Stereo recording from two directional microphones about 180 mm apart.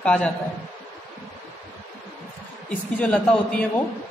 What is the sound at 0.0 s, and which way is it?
Speech, 5° left (ahead or behind).